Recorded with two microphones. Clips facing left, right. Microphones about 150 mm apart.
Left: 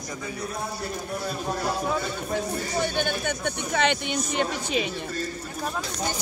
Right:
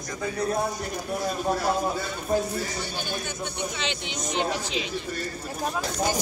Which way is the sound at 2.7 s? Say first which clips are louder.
Left 6 dB; 60° left (ahead or behind).